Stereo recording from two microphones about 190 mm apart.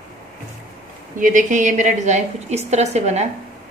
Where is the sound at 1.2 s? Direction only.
40° right (ahead or behind).